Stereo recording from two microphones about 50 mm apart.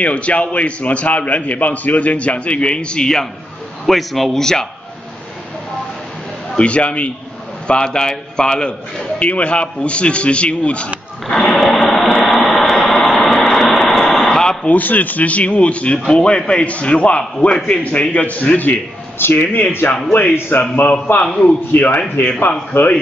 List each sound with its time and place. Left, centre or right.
0.0 s a man's voice: left
3.8 s a man's voice: centre
6.5 s a man's voice: left
11.2 s a sound: centre
14.7 s a man's voice: left
19.2 s a man's voice: left
20.1 s a man's voice: left
21.3 s a man's voice: centre
21.7 s a man's voice: left
22.7 s a man's voice: left